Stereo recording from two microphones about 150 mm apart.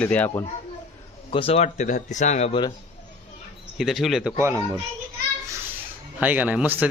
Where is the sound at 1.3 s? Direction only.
40° left (ahead or behind).